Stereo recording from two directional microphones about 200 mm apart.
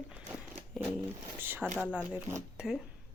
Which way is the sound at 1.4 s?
10° right (ahead or behind).